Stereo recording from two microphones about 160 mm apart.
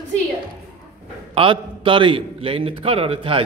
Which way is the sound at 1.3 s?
35° right (ahead or behind).